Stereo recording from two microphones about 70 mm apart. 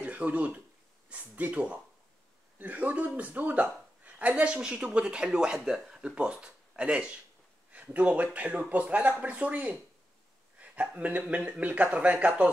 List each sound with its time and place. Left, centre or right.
0.0 s speech: right